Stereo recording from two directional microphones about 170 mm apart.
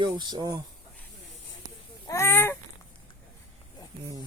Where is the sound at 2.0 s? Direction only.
15° left (ahead or behind).